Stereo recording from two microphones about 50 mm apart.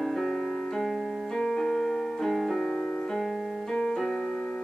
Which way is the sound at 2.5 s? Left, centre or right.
Centre.